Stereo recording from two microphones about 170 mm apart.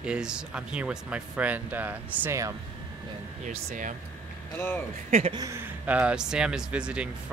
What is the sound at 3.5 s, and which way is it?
Speech, 45° right (ahead or behind).